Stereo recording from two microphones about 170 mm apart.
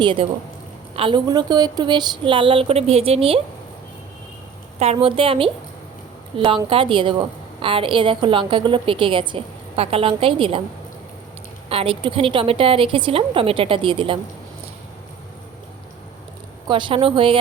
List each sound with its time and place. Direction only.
0.0 s a woman's voice: 30° right (ahead or behind)
4.8 s a woman's voice: 35° right (ahead or behind)
11.7 s a woman's voice: 35° right (ahead or behind)
16.6 s a woman's voice: 30° right (ahead or behind)